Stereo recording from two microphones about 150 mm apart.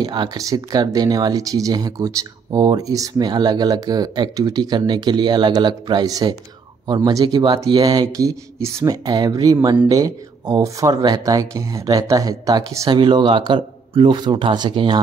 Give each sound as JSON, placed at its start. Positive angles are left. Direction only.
{"t": 0.0, "sound": "speech", "side_deg": -30}